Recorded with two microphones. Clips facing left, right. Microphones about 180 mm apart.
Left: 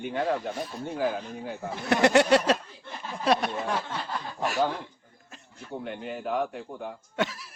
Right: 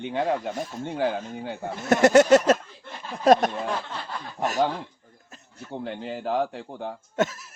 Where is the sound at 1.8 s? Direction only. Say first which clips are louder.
Right 4 dB; 45° right (ahead or behind).